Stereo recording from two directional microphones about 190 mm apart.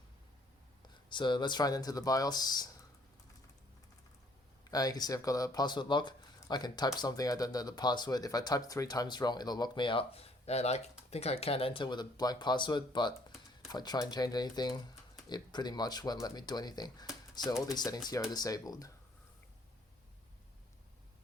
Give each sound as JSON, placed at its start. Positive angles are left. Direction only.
{"t": 1.1, "sound": "speech", "side_deg": 25}
{"t": 4.7, "sound": "speech", "side_deg": 20}